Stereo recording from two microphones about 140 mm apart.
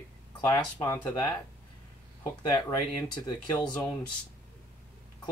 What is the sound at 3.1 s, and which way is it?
Speech, 35° left (ahead or behind).